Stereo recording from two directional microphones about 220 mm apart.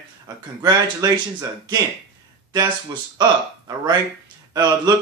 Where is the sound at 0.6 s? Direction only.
15° right (ahead or behind).